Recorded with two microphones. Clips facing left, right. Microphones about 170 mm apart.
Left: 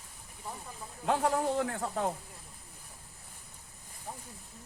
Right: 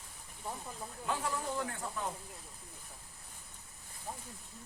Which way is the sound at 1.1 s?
65° left (ahead or behind).